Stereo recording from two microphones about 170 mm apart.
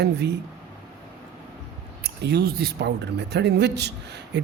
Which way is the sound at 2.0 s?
70° right (ahead or behind).